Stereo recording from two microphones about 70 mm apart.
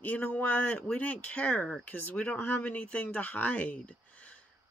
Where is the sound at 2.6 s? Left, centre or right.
Centre.